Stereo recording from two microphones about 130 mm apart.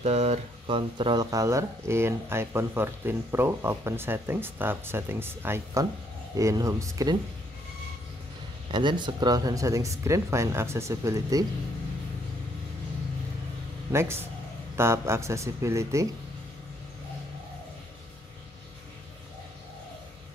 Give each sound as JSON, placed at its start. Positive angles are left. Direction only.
{"t": 0.0, "sound": "speech", "side_deg": -60}
{"t": 0.7, "sound": "speech", "side_deg": -40}
{"t": 8.7, "sound": "speech", "side_deg": -35}
{"t": 13.9, "sound": "speech", "side_deg": -20}